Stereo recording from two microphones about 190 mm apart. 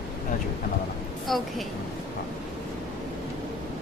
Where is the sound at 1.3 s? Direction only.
Centre (ahead or behind).